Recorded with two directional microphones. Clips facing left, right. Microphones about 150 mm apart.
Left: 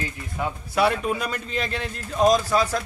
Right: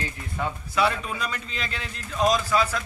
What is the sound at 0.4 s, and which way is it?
Speech, 5° left (ahead or behind).